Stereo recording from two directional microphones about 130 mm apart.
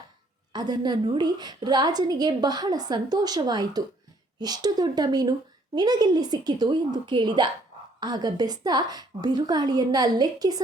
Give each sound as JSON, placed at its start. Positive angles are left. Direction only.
{"t": 0.5, "sound": "a woman's voice", "side_deg": -35}